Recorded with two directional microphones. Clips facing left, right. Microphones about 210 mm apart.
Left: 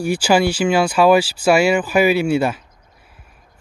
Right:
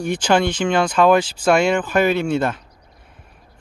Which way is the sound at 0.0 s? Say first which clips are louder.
Left 2 dB; 10° left (ahead or behind).